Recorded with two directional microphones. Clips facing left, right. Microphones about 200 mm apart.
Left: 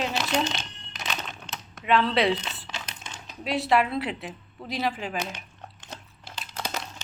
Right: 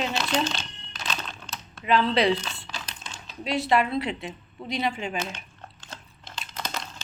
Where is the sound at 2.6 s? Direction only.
20° left (ahead or behind).